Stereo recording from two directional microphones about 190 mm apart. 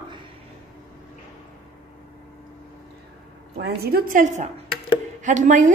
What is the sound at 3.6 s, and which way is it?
A woman's voice, 55° right (ahead or behind).